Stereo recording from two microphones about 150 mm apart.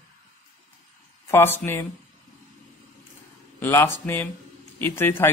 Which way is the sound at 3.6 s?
15° left (ahead or behind).